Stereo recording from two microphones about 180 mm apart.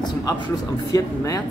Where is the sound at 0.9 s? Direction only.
20° left (ahead or behind).